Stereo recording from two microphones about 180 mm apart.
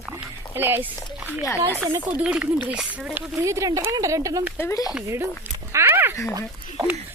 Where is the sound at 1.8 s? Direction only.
5° right (ahead or behind).